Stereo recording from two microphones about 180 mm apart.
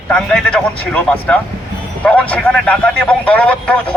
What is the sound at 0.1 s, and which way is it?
A man's voice, 5° left (ahead or behind).